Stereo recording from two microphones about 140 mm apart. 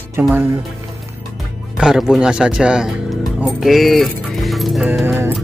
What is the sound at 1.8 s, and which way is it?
Speech, 5° right (ahead or behind).